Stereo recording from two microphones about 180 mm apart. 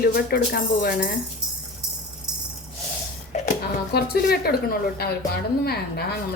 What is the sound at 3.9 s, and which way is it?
A woman's voice, 60° left (ahead or behind).